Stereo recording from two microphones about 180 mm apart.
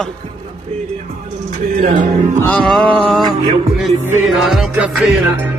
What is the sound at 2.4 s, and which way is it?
Speech, 5° left (ahead or behind).